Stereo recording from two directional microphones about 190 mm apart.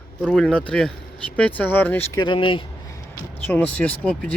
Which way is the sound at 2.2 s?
25° left (ahead or behind).